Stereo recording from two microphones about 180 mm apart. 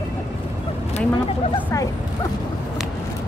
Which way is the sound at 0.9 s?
35° left (ahead or behind).